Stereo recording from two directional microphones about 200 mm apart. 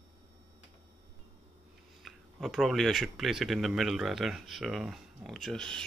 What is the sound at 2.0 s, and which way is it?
Speech, centre (ahead or behind).